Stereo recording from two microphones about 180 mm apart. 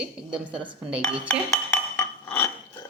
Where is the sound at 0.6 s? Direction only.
25° right (ahead or behind).